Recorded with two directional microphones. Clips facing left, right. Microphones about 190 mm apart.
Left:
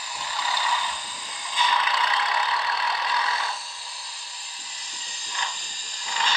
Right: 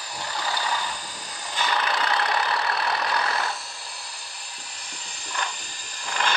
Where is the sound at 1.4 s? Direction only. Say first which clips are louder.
Even; 65° right (ahead or behind).